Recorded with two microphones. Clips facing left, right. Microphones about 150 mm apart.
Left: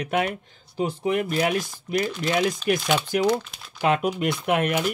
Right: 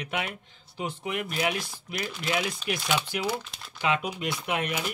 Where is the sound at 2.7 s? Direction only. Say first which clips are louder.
Left 10 dB; 50° left (ahead or behind).